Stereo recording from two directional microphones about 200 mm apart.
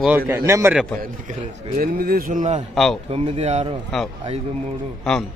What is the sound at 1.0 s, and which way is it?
A man's voice, 40° right (ahead or behind).